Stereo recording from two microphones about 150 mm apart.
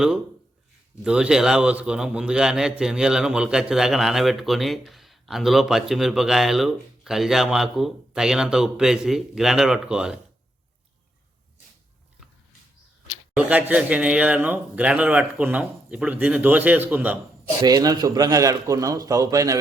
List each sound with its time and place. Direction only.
1.0 s a man's voice: 5° right (ahead or behind)
13.3 s a man's voice: 10° right (ahead or behind)
17.6 s a man's voice: 25° right (ahead or behind)